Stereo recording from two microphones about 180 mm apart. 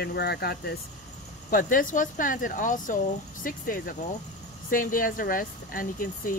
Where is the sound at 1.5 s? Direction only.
50° left (ahead or behind).